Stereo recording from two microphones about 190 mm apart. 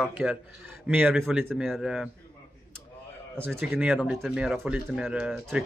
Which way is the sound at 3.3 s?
10° right (ahead or behind).